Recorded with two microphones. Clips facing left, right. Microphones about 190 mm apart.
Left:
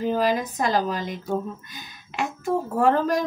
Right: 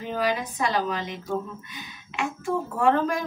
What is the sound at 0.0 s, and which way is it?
Speech, 40° left (ahead or behind).